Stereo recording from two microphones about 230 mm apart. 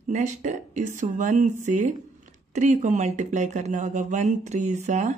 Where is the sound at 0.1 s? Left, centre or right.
Right.